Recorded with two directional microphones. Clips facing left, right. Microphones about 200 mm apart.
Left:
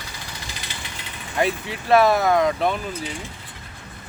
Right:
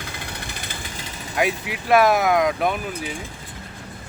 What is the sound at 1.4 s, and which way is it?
Speech, 10° right (ahead or behind).